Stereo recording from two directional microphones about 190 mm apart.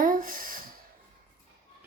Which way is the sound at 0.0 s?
45° right (ahead or behind).